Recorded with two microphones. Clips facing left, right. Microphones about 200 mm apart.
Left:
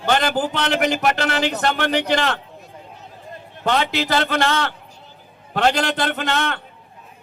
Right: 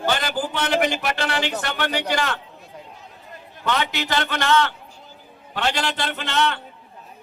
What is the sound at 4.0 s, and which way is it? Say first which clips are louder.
A man's voice: left 5 dB; 35° left (ahead or behind).